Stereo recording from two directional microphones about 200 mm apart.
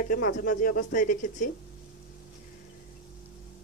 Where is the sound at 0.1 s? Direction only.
45° left (ahead or behind).